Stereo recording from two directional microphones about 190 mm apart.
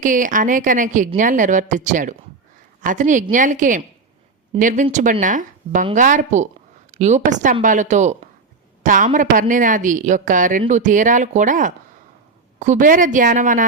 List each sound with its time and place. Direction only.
0.0 s a woman's voice: 45° right (ahead or behind)